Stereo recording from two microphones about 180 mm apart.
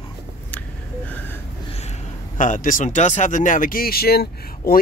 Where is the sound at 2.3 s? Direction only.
45° left (ahead or behind).